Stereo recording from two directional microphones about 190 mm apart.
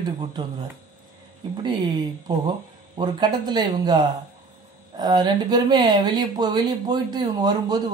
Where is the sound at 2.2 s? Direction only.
20° right (ahead or behind).